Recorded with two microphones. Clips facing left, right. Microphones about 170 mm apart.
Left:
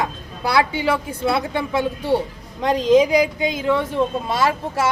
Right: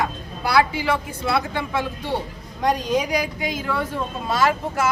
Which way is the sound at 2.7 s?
25° left (ahead or behind).